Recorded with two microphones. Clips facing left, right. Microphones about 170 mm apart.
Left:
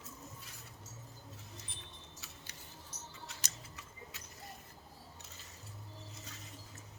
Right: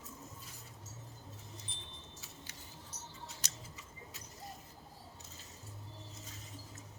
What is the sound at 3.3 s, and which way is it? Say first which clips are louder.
Scissors: right 1 dB; 70° left (ahead or behind).